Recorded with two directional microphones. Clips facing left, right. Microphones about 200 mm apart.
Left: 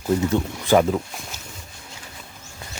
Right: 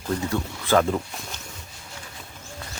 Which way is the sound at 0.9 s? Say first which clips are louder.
Left 2 dB; 5° left (ahead or behind).